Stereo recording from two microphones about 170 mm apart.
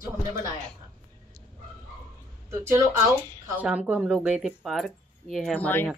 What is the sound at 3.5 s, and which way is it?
Speech, 10° right (ahead or behind).